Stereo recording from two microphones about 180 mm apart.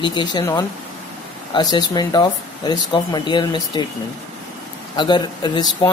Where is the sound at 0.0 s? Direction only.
25° left (ahead or behind).